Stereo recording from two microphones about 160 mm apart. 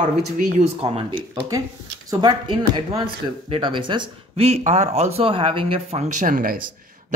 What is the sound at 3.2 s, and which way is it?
Speech, 30° right (ahead or behind).